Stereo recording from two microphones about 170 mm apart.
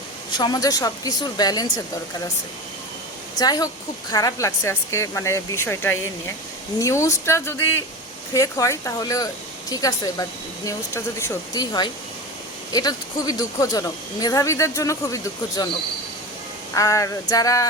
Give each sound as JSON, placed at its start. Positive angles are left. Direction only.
{"t": 0.3, "sound": "speech", "side_deg": 25}
{"t": 3.3, "sound": "speech", "side_deg": 25}
{"t": 16.7, "sound": "speech", "side_deg": 20}